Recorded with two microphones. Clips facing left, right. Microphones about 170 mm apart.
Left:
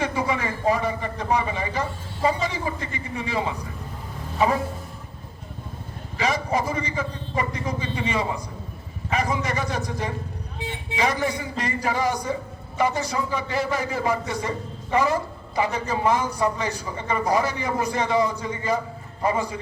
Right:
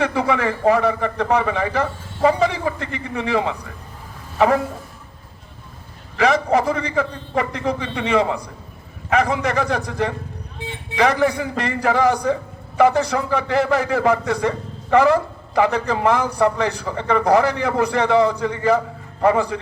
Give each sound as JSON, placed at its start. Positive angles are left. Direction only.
{"t": 0.0, "sound": "a man's voice", "side_deg": -70}
{"t": 6.1, "sound": "a man's voice", "side_deg": -65}